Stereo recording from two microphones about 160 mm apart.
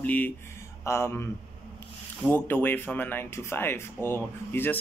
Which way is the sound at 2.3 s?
10° left (ahead or behind).